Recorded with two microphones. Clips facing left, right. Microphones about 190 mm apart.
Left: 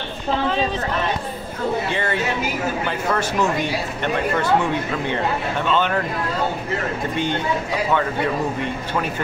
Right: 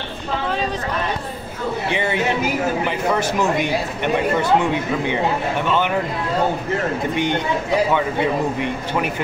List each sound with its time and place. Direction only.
1.9 s speech: 15° right (ahead or behind)
5.7 s speech: 15° right (ahead or behind)
7.2 s speech: 15° right (ahead or behind)
8.5 s speech: 15° right (ahead or behind)